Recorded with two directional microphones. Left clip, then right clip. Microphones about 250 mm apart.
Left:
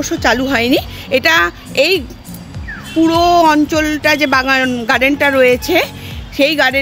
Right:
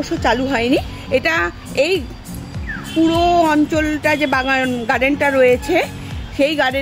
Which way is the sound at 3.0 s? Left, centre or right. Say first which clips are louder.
Left 4 dB; left.